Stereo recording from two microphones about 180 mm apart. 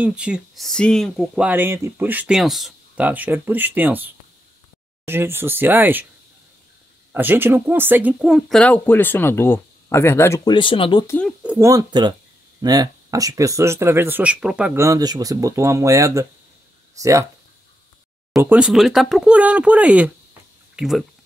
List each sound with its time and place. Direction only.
0.0 s speech: 5° right (ahead or behind)
7.1 s speech: 10° right (ahead or behind); by 11.1 s 25° left (ahead or behind)
11.1 s speech: 10° left (ahead or behind)
11.4 s speech: 15° right (ahead or behind)
14.8 s speech: 20° right (ahead or behind)
18.4 s speech: 5° right (ahead or behind)